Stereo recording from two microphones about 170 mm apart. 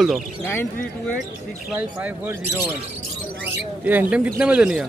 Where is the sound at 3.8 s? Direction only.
10° right (ahead or behind).